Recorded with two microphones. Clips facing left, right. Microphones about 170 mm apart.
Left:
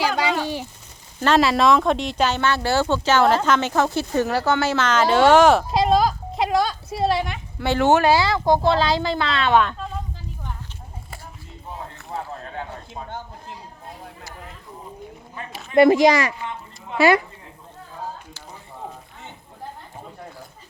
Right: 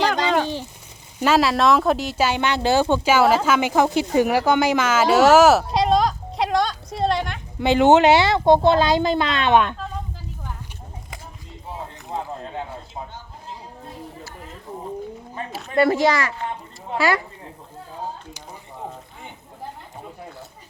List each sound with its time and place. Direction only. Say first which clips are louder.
1.2 s speech: even; 5° right (ahead or behind)
7.6 s speech: right 3 dB; 20° right (ahead or behind)
12.1 s a sound: right 2 dB; 20° right (ahead or behind)
15.5 s speech: left 4 dB; 15° left (ahead or behind)